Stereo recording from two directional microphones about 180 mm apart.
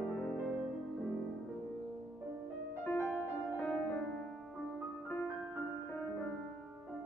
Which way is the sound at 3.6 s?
Centre (ahead or behind).